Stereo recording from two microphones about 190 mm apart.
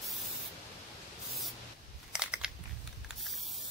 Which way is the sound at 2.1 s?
5° right (ahead or behind).